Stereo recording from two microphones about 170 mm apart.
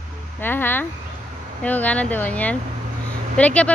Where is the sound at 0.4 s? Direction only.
10° left (ahead or behind).